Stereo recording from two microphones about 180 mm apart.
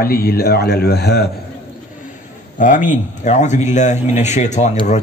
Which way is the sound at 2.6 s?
45° left (ahead or behind).